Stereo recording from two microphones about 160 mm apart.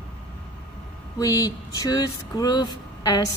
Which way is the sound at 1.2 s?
20° left (ahead or behind).